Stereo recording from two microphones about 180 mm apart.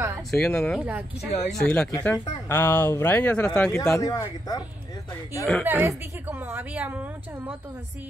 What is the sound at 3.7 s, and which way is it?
Speech, 15° left (ahead or behind).